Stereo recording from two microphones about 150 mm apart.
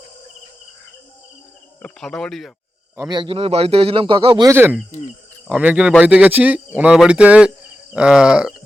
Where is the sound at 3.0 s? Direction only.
30° right (ahead or behind).